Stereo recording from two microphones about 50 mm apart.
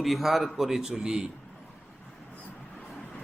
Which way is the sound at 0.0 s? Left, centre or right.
Centre.